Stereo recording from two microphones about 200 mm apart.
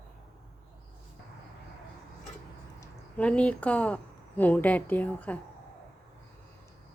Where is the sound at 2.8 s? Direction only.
5° left (ahead or behind).